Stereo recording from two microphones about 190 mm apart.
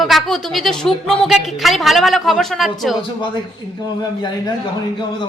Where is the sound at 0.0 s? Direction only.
Centre (ahead or behind).